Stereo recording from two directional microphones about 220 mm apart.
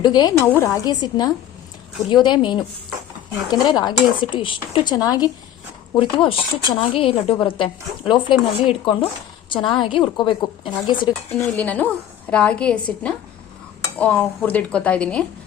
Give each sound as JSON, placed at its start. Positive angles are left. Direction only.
{"t": 0.0, "sound": "a woman's voice", "side_deg": 20}
{"t": 11.3, "sound": "a woman's voice", "side_deg": 10}